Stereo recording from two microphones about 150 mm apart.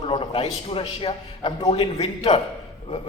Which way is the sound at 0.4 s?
35° left (ahead or behind).